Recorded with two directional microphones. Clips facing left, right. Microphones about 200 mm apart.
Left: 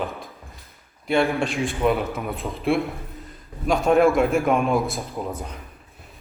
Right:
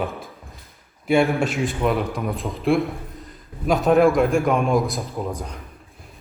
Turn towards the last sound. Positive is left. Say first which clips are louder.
# right 2 dB
turn(degrees=0)  # may be behind; listen again after turning